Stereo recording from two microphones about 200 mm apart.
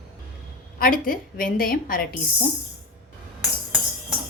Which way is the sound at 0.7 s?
45° left (ahead or behind).